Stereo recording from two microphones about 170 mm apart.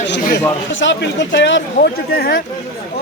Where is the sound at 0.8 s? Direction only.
90° left.